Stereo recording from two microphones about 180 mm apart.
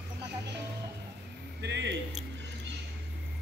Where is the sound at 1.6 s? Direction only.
70° right (ahead or behind).